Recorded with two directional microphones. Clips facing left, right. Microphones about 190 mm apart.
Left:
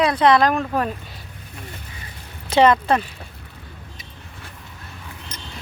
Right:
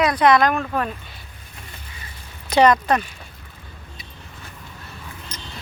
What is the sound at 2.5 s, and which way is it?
Speech, 25° left (ahead or behind).